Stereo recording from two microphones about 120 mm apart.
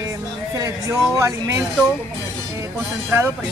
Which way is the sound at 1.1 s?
25° right (ahead or behind).